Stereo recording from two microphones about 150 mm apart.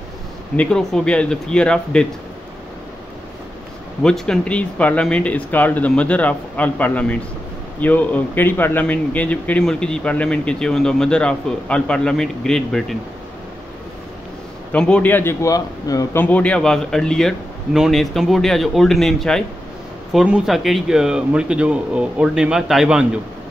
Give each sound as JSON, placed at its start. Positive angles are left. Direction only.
{"t": 0.6, "sound": "a man's voice", "side_deg": 5}
{"t": 4.0, "sound": "a man's voice", "side_deg": 5}
{"t": 14.7, "sound": "a man's voice", "side_deg": 10}